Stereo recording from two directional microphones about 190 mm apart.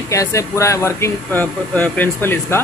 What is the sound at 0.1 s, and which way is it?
A man's voice, 15° left (ahead or behind).